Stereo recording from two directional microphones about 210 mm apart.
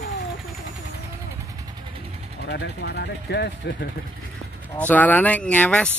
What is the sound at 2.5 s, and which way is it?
Speech, 55° left (ahead or behind).